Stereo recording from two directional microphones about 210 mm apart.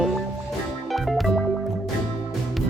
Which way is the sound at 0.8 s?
Centre (ahead or behind).